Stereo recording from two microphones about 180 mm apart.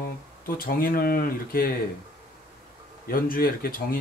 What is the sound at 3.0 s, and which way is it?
Speech, 55° left (ahead or behind).